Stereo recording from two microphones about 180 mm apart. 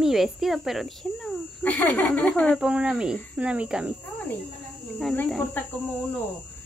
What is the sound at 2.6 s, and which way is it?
Speech, 5° right (ahead or behind).